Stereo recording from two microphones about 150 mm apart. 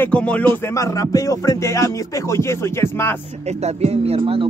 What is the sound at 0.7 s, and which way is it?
Music, 20° left (ahead or behind).